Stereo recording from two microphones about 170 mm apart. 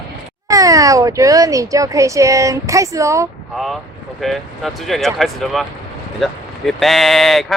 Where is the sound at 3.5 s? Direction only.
Centre (ahead or behind).